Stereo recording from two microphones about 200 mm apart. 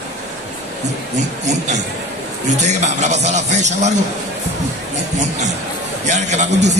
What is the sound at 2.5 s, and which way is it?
A man's voice, 35° right (ahead or behind).